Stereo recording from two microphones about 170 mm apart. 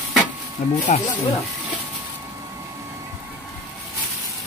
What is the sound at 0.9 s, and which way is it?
Speech, 45° left (ahead or behind).